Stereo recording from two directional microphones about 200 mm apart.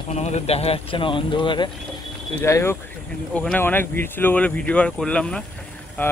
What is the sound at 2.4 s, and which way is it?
Speech, 15° left (ahead or behind).